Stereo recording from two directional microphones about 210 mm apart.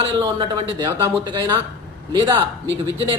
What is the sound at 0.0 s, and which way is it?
Speech, 20° right (ahead or behind).